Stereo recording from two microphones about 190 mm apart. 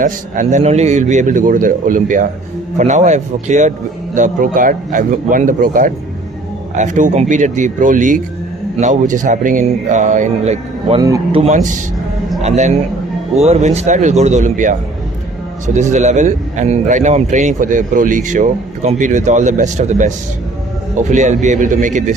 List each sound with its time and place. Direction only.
0.0 s a man's voice: 40° right (ahead or behind)
11.0 s a man's voice: 15° right (ahead or behind)
11.3 s a man's voice: 35° right (ahead or behind)